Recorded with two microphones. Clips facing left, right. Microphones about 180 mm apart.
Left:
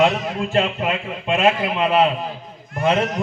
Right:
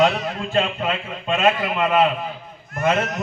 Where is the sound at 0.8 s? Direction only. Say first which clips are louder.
Left 2 dB; 15° left (ahead or behind).